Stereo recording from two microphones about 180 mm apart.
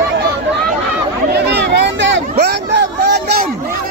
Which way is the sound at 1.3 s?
70° right (ahead or behind).